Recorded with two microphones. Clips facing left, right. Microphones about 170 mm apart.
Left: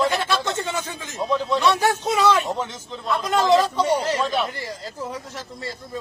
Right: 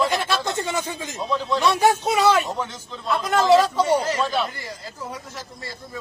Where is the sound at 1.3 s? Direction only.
20° left (ahead or behind).